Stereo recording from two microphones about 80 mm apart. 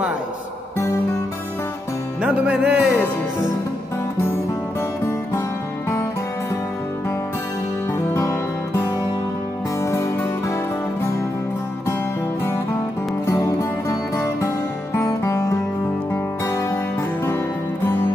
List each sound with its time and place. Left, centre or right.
2.2 s music: centre
8.1 s music: left
13.3 s music: left